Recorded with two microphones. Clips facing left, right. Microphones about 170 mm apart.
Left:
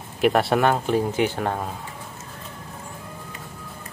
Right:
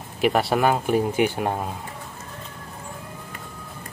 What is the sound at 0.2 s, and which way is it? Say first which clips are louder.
Speech: left 1 dB; centre (ahead or behind).